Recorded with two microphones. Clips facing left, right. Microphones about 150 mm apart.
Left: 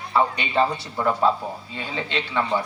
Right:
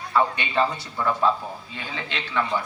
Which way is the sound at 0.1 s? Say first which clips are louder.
Left 1 dB; 25° left (ahead or behind).